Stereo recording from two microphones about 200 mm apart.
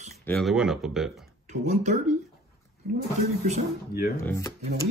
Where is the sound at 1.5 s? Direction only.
35° right (ahead or behind).